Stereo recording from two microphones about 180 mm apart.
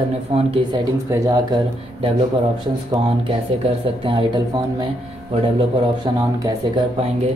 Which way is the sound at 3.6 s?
35° right (ahead or behind).